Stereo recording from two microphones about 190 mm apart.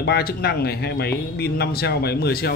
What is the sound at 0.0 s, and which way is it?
Speech, 55° left (ahead or behind).